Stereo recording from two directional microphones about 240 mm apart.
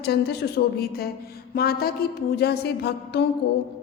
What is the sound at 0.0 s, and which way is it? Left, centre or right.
Speech, left.